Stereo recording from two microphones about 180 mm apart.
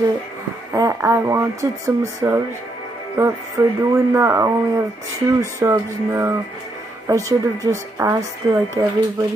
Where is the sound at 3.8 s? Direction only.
15° right (ahead or behind).